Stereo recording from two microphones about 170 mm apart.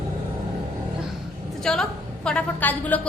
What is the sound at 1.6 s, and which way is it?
A woman's voice, 5° left (ahead or behind).